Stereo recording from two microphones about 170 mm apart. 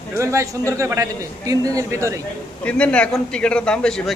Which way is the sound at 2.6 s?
5° left (ahead or behind).